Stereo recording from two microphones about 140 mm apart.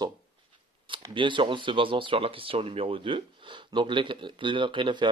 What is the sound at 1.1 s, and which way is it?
Speech, 35° right (ahead or behind).